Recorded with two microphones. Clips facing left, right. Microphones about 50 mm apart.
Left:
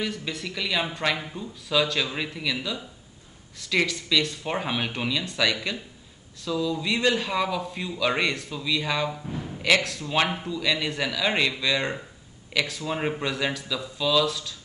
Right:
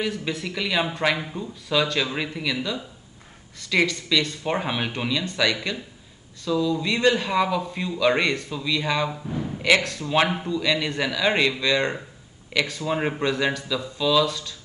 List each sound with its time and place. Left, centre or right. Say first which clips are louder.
0.0 s speech: right 3 dB; centre